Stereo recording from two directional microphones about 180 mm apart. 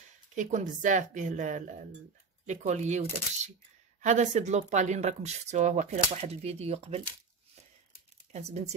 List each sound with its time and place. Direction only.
0.4 s a woman's voice: 45° right (ahead or behind)
8.3 s speech: 40° right (ahead or behind)